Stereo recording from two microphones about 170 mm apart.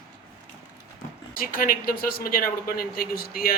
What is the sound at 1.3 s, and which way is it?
A man's voice, 55° left (ahead or behind).